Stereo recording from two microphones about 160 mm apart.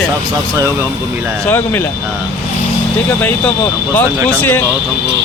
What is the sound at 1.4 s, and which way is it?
Speech, 15° left (ahead or behind).